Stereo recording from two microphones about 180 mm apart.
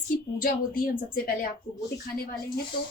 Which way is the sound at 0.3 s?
50° left (ahead or behind).